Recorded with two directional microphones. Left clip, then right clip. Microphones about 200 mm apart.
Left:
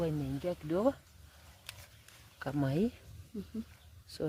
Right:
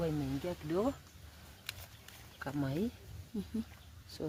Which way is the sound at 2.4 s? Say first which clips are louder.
Left 4 dB; 50° left (ahead or behind).